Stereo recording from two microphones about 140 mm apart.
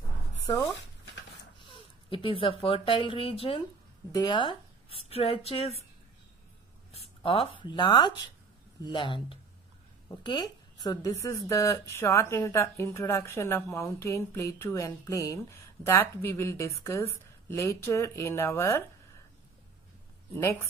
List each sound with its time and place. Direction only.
1.7 s speech: 40° left (ahead or behind)
4.1 s a woman's voice: 30° left (ahead or behind)
6.9 s speech: 40° left (ahead or behind); by 18.9 s 20° left (ahead or behind)